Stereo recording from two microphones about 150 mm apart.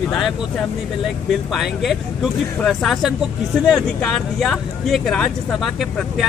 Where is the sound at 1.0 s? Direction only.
Centre (ahead or behind).